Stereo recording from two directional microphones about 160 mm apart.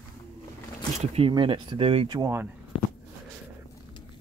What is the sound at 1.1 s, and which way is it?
Speech, 35° right (ahead or behind).